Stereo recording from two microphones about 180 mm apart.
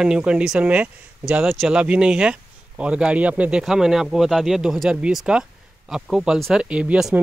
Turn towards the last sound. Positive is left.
turn(degrees=-5)  # may be behind; listen again after turning